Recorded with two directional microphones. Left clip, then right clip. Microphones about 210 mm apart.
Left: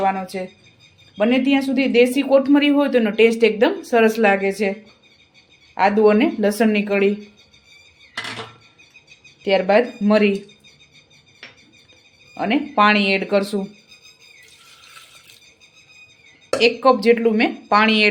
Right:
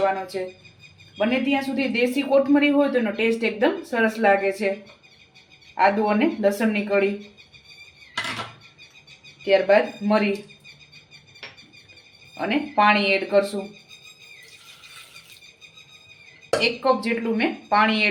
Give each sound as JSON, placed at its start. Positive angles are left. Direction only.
{"t": 0.0, "sound": "speech", "side_deg": 55}
{"t": 5.7, "sound": "a woman's voice", "side_deg": 55}
{"t": 9.4, "sound": "speech", "side_deg": 50}
{"t": 12.3, "sound": "speech", "side_deg": 50}
{"t": 16.6, "sound": "a woman's voice", "side_deg": 55}